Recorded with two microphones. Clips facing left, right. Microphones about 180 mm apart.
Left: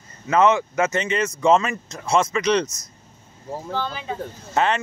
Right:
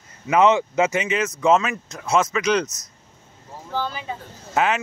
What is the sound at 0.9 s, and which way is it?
Speech, 5° right (ahead or behind).